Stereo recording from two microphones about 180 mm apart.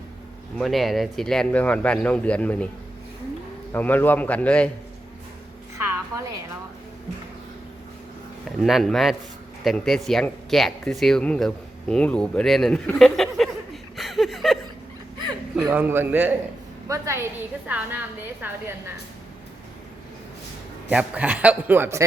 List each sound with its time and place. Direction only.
0.6 s speech: centre (ahead or behind)
3.7 s a man's voice: 10° left (ahead or behind)
5.7 s a sound: 15° right (ahead or behind)
8.6 s speech: centre (ahead or behind)
13.9 s chuckle: centre (ahead or behind)
15.6 s a man's voice: 10° right (ahead or behind)
20.9 s a man's voice: 5° right (ahead or behind)